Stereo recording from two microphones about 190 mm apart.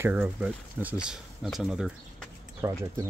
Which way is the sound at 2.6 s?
15° right (ahead or behind).